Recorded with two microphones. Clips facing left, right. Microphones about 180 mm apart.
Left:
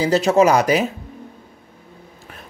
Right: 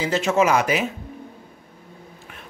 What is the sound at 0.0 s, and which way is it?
Speech, 35° left (ahead or behind).